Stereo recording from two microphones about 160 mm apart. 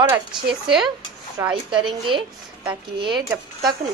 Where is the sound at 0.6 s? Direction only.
Centre (ahead or behind).